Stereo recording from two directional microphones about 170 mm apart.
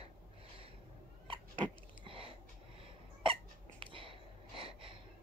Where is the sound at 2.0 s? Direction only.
30° right (ahead or behind).